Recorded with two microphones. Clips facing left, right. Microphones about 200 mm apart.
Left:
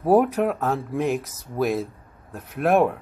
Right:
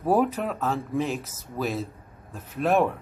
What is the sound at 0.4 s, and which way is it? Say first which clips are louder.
Speech: left 5 dB; 55° left (ahead or behind).